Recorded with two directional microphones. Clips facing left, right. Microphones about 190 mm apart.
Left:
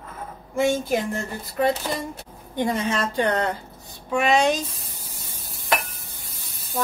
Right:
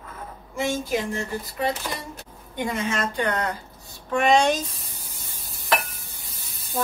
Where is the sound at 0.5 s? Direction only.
50° left (ahead or behind).